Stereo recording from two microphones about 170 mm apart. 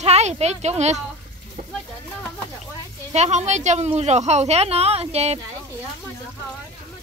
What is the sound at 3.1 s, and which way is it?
A woman's voice, 40° right (ahead or behind).